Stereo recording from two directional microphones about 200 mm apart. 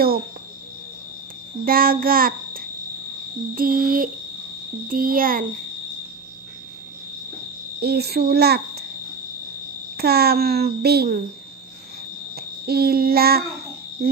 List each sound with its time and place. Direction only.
1.6 s a child's voice: 45° right (ahead or behind)
7.8 s a child's voice: 55° right (ahead or behind)
9.9 s a child's voice: 50° right (ahead or behind)
12.4 s child singing: 50° right (ahead or behind)